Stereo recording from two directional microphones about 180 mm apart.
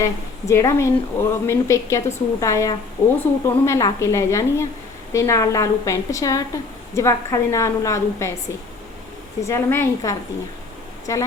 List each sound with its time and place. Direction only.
0.0 s a woman's voice: 15° left (ahead or behind)
9.4 s a woman's voice: 15° left (ahead or behind)